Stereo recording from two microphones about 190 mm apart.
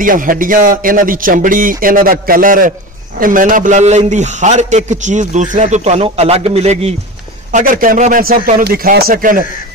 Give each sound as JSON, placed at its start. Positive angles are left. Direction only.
{"t": 0.0, "sound": "a man's voice", "side_deg": -45}
{"t": 7.5, "sound": "speech", "side_deg": -45}